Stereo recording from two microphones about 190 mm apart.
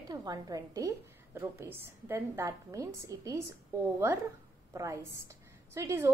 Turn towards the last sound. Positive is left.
turn(degrees=-15)  # may be behind; listen again after turning